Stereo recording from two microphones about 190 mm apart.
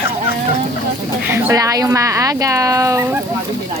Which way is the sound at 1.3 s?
10° right (ahead or behind).